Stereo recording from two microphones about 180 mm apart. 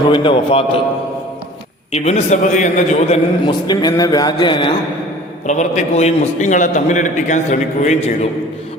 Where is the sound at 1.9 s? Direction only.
35° left (ahead or behind).